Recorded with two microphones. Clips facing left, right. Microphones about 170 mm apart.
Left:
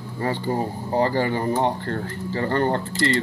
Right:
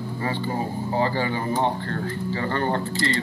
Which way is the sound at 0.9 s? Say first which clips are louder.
Left 4 dB; 40° left (ahead or behind).